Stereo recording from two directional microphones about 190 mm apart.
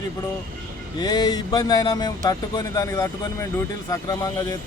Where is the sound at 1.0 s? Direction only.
20° left (ahead or behind).